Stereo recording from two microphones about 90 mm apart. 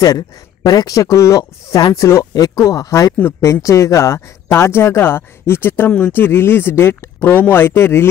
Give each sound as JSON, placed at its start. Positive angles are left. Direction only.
{"t": 0.7, "sound": "speech", "side_deg": 40}
{"t": 3.2, "sound": "speech", "side_deg": 25}